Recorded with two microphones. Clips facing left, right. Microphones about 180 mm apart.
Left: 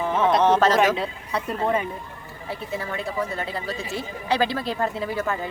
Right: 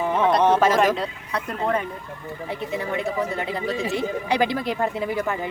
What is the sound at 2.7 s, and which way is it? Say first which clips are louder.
A woman's voice: right 3 dB; 20° right (ahead or behind).